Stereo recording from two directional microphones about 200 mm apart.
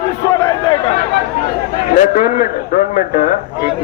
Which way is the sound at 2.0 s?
40° left (ahead or behind).